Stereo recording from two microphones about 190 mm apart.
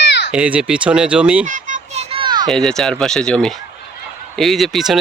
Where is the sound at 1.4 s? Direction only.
40° right (ahead or behind); by 2.5 s 25° right (ahead or behind).